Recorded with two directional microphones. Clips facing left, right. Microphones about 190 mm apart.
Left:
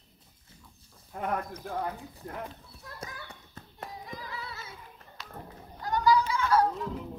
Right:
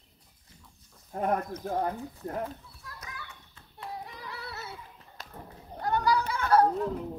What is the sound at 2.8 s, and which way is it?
Children playing, 35° left (ahead or behind).